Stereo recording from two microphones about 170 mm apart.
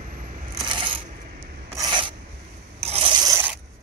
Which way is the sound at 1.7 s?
25° right (ahead or behind).